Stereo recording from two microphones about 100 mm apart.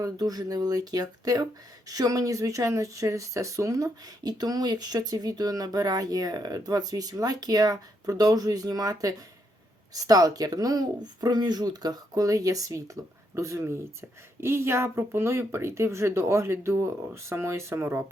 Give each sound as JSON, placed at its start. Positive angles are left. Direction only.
{"t": 0.0, "sound": "speech", "side_deg": -40}